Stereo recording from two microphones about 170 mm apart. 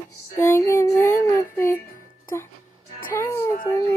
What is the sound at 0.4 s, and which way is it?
Female singing, 15° left (ahead or behind).